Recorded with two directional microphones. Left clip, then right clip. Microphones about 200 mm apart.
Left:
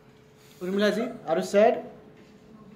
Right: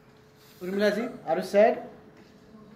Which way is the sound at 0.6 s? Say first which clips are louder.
Left 1 dB; 25° left (ahead or behind).